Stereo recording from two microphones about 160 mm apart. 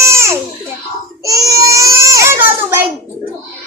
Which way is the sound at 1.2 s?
20° right (ahead or behind).